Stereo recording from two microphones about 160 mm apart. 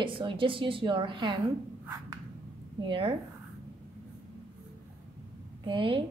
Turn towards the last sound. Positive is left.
turn(degrees=-35)  # may be behind; listen again after turning